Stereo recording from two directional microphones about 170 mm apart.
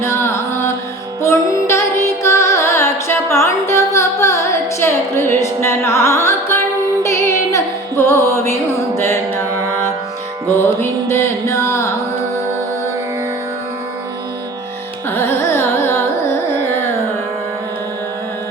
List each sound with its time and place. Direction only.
0.0 s carnatic music: 15° left (ahead or behind)
1.2 s music: 15° left (ahead or behind)
15.1 s carnatic music: 15° left (ahead or behind)